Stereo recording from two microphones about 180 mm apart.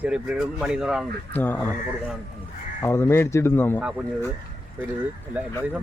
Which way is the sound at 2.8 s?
15° left (ahead or behind).